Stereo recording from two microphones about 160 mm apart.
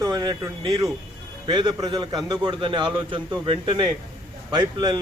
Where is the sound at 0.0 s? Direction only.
25° right (ahead or behind).